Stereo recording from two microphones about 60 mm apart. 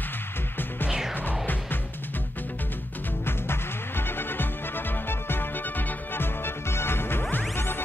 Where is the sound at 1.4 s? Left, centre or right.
Left.